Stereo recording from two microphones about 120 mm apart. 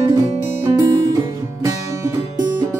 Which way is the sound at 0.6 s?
30° right (ahead or behind).